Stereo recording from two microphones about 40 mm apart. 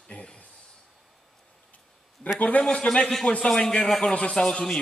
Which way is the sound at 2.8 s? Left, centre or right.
Left.